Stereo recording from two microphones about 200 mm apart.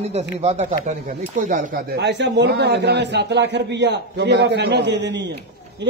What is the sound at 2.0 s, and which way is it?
A man's voice, 60° right (ahead or behind).